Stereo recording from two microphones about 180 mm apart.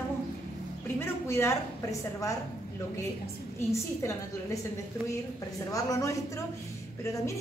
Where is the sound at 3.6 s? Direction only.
15° left (ahead or behind).